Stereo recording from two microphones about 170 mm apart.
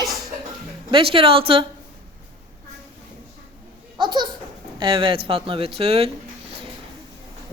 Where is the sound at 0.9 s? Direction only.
30° right (ahead or behind).